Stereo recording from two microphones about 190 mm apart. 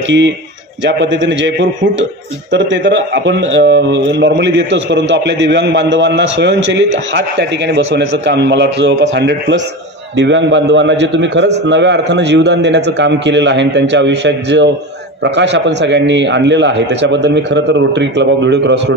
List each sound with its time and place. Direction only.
0.8 s a man's voice: 70° right (ahead or behind)